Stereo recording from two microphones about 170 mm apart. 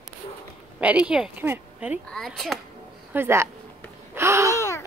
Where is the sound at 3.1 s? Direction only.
15° right (ahead or behind).